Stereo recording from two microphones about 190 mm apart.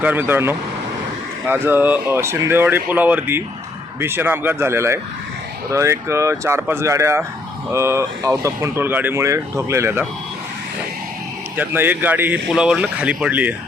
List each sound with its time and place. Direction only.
0.0 s speech: 10° right (ahead or behind)
11.5 s speech: 10° right (ahead or behind)